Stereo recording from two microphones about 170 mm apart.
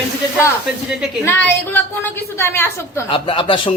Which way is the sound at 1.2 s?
10° left (ahead or behind).